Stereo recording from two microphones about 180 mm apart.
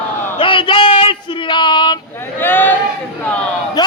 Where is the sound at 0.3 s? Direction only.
30° left (ahead or behind).